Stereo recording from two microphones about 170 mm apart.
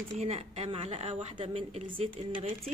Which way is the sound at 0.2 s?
40° right (ahead or behind).